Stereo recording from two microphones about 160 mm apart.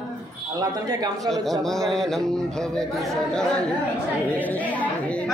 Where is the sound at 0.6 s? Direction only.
25° right (ahead or behind).